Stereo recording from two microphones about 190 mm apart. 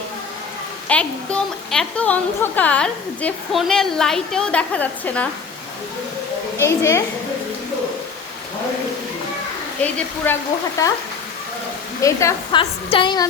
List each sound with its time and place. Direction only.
0.9 s a woman's voice: 5° left (ahead or behind)
6.6 s a woman's voice: 15° left (ahead or behind)
10.3 s a woman's voice: 10° left (ahead or behind)
12.0 s a woman's voice: 20° left (ahead or behind)